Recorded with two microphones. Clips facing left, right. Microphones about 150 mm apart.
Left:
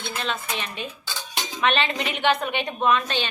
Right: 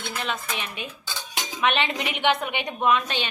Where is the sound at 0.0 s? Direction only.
10° right (ahead or behind).